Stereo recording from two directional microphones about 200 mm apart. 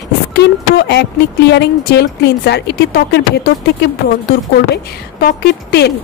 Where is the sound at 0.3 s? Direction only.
60° left (ahead or behind).